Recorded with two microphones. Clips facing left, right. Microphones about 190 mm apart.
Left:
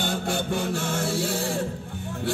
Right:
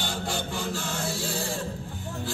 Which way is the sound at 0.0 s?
55° left (ahead or behind).